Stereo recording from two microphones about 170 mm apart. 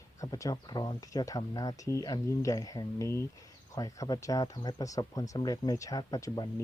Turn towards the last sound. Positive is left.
turn(degrees=20)  # may be behind; listen again after turning